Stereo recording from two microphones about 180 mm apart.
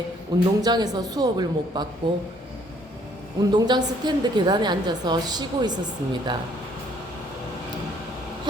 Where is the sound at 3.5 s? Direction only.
25° right (ahead or behind).